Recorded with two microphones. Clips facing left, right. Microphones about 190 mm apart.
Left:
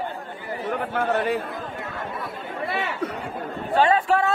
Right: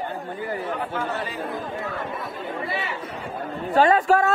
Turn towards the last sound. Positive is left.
turn(degrees=-40)  # may be behind; listen again after turning